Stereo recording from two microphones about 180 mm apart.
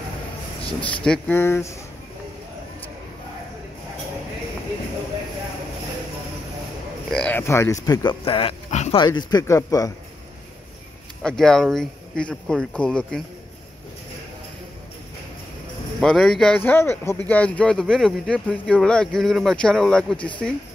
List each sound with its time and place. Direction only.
1.0 s speech: 5° left (ahead or behind)
7.1 s speech: 5° left (ahead or behind); by 9.0 s 40° left (ahead or behind)
9.0 s a man's voice: 20° left (ahead or behind)
11.2 s speech: 5° left (ahead or behind)
16.0 s speech: centre (ahead or behind)